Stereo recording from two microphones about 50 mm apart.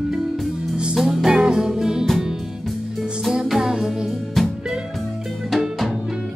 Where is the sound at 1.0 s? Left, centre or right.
Centre.